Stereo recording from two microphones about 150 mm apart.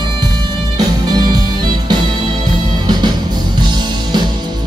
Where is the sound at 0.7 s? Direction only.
25° right (ahead or behind).